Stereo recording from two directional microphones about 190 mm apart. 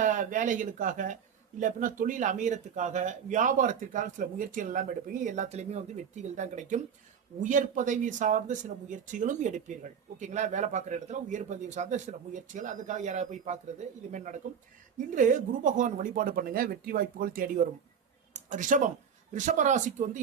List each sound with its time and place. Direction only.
0.0 s speech: 40° right (ahead or behind)